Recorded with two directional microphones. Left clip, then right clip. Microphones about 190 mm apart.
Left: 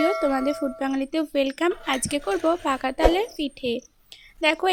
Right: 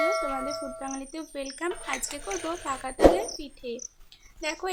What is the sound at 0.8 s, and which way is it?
A woman's voice, 45° left (ahead or behind).